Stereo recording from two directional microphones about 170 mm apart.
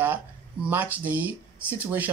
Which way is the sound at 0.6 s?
10° right (ahead or behind).